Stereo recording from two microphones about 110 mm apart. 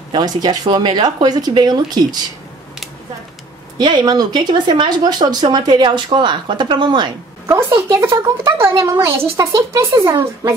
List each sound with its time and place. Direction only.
0.1 s speech: 40° right (ahead or behind)
3.8 s speech: 40° right (ahead or behind)
7.4 s speech: 25° right (ahead or behind)